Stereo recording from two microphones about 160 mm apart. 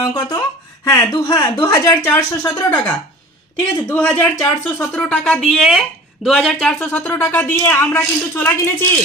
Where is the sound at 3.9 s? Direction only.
10° left (ahead or behind).